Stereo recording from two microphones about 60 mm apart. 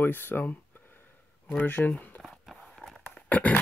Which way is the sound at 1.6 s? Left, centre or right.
Left.